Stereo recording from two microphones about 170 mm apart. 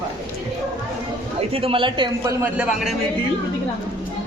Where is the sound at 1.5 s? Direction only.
35° right (ahead or behind).